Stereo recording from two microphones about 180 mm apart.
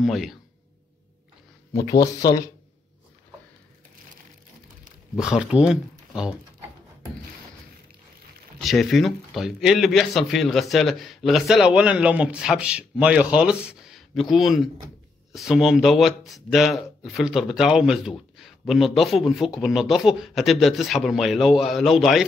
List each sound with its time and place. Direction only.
0.0 s speech: centre (ahead or behind)
1.7 s speech: 20° left (ahead or behind)
5.1 s speech: 5° right (ahead or behind)
8.6 s speech: centre (ahead or behind)